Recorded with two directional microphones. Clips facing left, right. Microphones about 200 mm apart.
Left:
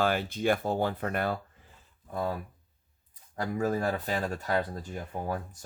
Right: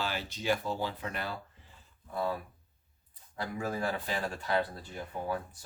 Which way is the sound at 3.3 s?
45° left (ahead or behind).